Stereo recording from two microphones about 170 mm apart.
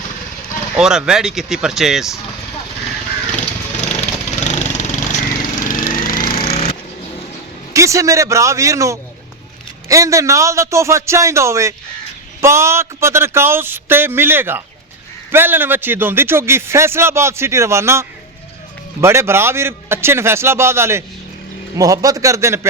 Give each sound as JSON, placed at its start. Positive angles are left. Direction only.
{"t": 0.8, "sound": "speech", "side_deg": -5}
{"t": 4.4, "sound": "vehicle", "side_deg": 45}
{"t": 6.3, "sound": "jackhammer", "side_deg": 35}
{"t": 7.7, "sound": "a man's voice", "side_deg": -20}